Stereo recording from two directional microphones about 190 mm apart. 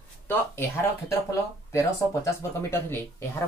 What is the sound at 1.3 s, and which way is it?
Speech, 15° left (ahead or behind).